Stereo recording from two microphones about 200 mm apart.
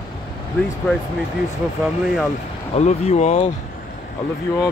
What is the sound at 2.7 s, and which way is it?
Speech, 30° left (ahead or behind).